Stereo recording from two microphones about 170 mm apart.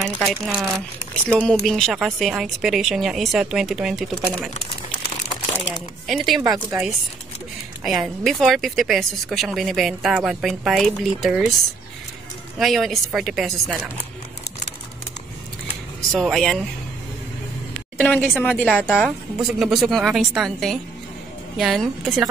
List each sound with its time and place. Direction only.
0.2 s speech: centre (ahead or behind)
6.0 s speech: centre (ahead or behind)
12.5 s speech: centre (ahead or behind)
16.2 s speech: centre (ahead or behind)
17.9 s a woman's voice: 5° left (ahead or behind)